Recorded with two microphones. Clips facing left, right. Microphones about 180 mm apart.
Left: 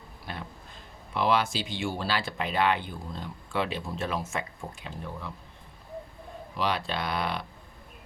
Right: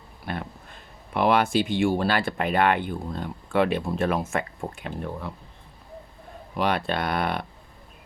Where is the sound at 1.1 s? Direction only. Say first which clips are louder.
Right 5 dB; 55° right (ahead or behind).